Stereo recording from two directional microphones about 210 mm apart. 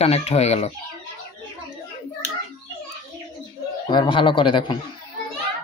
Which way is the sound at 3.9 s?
25° left (ahead or behind).